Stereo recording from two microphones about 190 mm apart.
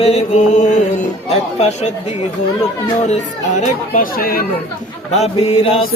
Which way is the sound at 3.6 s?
45° left (ahead or behind).